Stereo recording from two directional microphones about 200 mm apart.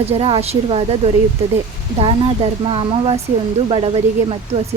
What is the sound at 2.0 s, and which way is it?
Speech, 25° right (ahead or behind).